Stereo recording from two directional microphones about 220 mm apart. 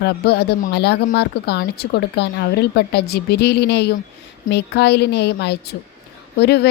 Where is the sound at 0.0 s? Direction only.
45° left (ahead or behind).